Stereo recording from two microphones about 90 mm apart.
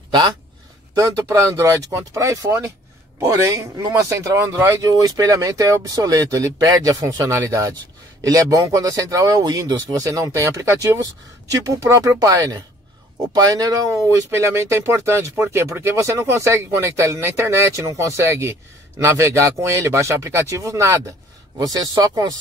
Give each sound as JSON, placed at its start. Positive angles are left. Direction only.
{"t": 1.5, "sound": "speech", "side_deg": -30}